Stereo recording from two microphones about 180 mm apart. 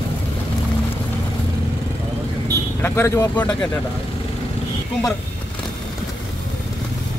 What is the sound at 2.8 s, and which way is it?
Speech, 15° left (ahead or behind).